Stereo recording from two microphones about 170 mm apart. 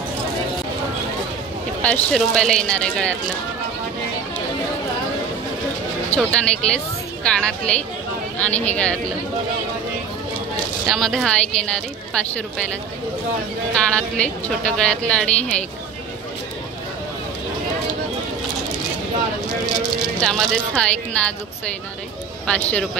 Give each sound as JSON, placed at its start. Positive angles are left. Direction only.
{"t": 1.8, "sound": "speech", "side_deg": 5}
{"t": 6.1, "sound": "a woman's voice", "side_deg": 5}
{"t": 10.9, "sound": "speech", "side_deg": 0}
{"t": 13.9, "sound": "a woman's voice", "side_deg": 5}
{"t": 20.2, "sound": "speech", "side_deg": 5}
{"t": 22.5, "sound": "a woman's voice", "side_deg": 5}